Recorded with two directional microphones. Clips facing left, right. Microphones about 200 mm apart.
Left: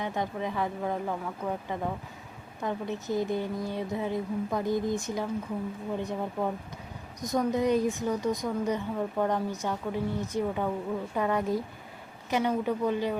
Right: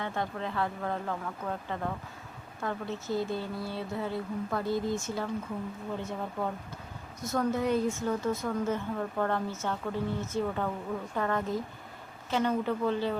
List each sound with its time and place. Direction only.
0.0 s speech: 15° left (ahead or behind)